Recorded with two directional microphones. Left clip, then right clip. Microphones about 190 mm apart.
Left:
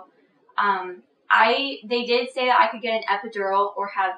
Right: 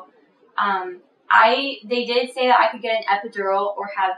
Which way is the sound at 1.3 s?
Centre (ahead or behind).